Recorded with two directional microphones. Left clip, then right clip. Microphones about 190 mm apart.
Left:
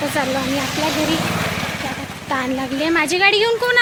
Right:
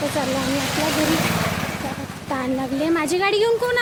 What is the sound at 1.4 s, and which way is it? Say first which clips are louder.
Vehicle: left 2 dB; 35° left (ahead or behind).